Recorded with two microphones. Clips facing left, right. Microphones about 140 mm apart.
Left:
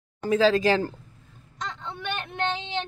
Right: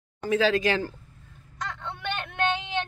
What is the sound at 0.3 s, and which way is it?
Speech, 35° left (ahead or behind).